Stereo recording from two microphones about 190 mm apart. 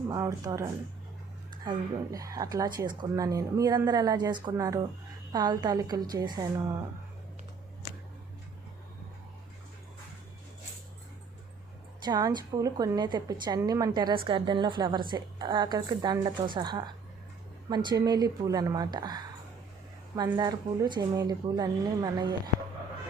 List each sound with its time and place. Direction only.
0.1 s a woman's voice: 20° right (ahead or behind)
12.0 s a woman's voice: 20° right (ahead or behind)